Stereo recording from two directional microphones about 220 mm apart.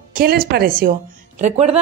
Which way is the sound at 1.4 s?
30° right (ahead or behind).